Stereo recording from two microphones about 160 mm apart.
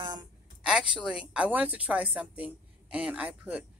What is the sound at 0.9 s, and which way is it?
Speech, 5° right (ahead or behind).